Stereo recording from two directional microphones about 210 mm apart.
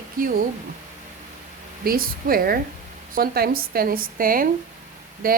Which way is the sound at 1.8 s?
45° right (ahead or behind).